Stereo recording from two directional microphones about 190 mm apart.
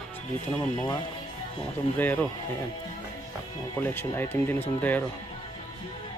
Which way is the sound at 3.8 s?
10° left (ahead or behind).